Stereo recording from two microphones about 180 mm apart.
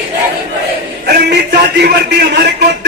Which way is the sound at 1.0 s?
65° right (ahead or behind).